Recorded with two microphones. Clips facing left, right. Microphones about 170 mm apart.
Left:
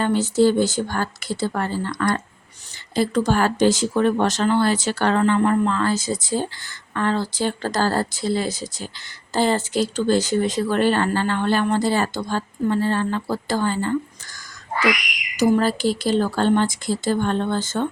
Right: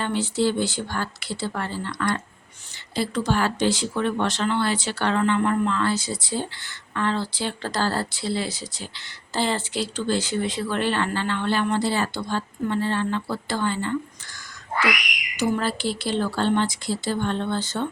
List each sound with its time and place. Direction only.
0.0 s speech: 45° left (ahead or behind)
15.4 s speech: 40° left (ahead or behind)